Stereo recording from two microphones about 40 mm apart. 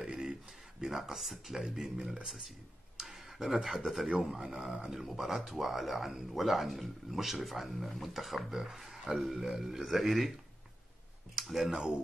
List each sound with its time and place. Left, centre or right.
0.0 s a sound: centre
0.7 s speech: centre
3.0 s speech: centre
11.3 s speech: centre
11.7 s speech: centre